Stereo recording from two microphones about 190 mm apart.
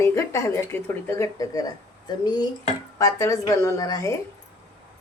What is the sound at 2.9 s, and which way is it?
Speech, 15° left (ahead or behind).